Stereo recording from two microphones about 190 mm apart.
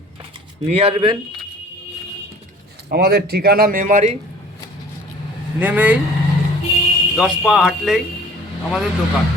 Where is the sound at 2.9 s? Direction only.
55° right (ahead or behind).